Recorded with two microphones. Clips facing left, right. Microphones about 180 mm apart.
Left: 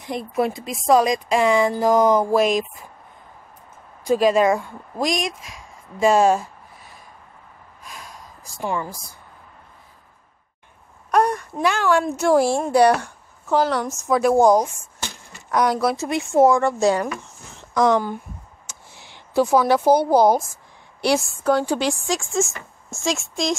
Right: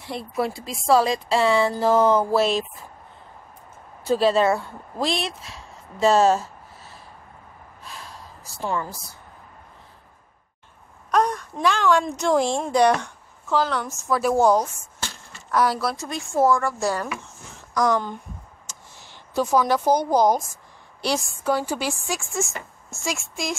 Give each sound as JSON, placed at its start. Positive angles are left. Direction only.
{"t": 0.0, "sound": "speech", "side_deg": 20}
{"t": 4.0, "sound": "speech", "side_deg": 15}
{"t": 7.8, "sound": "a sound", "side_deg": 15}
{"t": 11.1, "sound": "speech", "side_deg": 10}
{"t": 14.2, "sound": "a sound", "side_deg": 10}
{"t": 15.8, "sound": "speech", "side_deg": 20}
{"t": 21.3, "sound": "a woman's voice", "side_deg": -10}